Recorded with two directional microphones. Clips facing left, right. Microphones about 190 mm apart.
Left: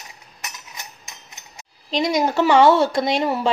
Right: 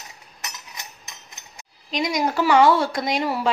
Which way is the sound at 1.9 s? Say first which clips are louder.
Left 3 dB; 30° left (ahead or behind).